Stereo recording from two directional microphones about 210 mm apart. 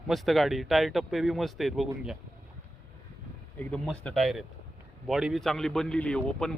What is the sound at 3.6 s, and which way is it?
Speech, 5° left (ahead or behind).